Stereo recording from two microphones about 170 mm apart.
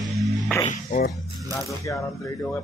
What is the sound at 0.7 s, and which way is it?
Speech, 50° left (ahead or behind).